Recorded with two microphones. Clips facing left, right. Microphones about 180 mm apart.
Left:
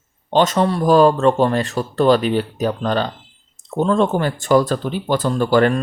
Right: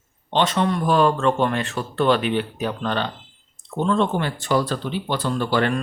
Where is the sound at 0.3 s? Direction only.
45° left (ahead or behind).